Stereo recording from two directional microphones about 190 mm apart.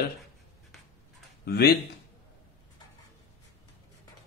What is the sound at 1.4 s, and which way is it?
Speech, 55° left (ahead or behind).